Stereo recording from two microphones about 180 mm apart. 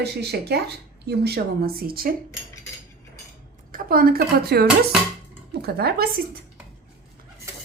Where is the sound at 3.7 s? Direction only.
55° right (ahead or behind).